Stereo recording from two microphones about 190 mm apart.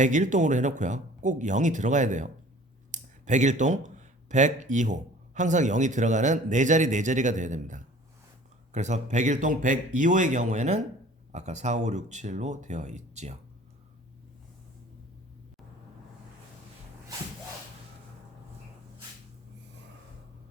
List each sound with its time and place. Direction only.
0.0 s speech: 40° right (ahead or behind)